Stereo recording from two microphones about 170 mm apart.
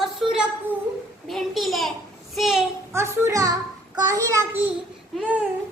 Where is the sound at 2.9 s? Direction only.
15° right (ahead or behind).